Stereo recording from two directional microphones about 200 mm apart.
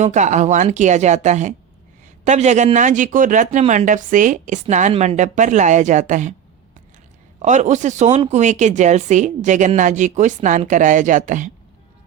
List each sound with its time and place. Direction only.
0.0 s speech: 35° right (ahead or behind)
7.4 s speech: 35° right (ahead or behind)